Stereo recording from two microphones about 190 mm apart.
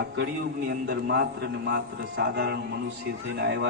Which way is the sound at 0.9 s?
55° right (ahead or behind).